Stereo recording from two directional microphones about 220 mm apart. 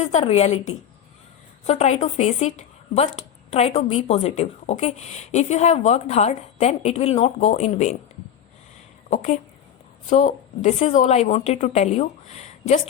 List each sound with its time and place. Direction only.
0.0 s a woman's voice: 30° left (ahead or behind)
9.0 s a woman's voice: 30° left (ahead or behind)